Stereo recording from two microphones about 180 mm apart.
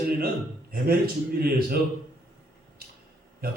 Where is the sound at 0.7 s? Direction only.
55° right (ahead or behind).